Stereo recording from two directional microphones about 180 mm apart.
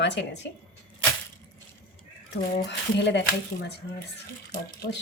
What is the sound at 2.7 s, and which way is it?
Speech, 75° left (ahead or behind).